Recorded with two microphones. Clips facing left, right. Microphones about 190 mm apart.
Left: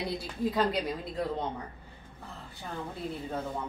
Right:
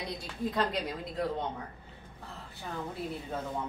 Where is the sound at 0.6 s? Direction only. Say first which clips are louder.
Left 2 dB; centre (ahead or behind).